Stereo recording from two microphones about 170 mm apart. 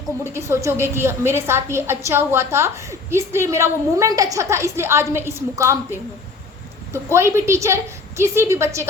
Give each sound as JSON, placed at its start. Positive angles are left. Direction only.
{"t": 0.3, "sound": "a woman's voice", "side_deg": -15}